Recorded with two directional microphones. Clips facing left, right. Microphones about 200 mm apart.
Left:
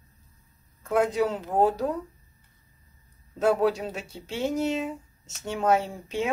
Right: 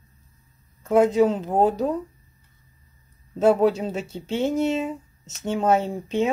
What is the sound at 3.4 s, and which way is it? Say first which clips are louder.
Speech: right 5 dB; 25° right (ahead or behind).